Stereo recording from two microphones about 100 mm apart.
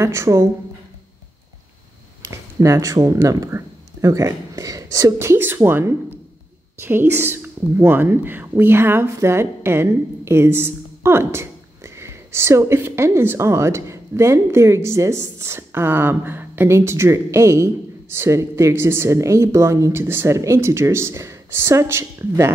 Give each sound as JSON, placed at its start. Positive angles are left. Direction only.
{"t": 0.0, "sound": "speech", "side_deg": -30}
{"t": 2.2, "sound": "speech", "side_deg": -30}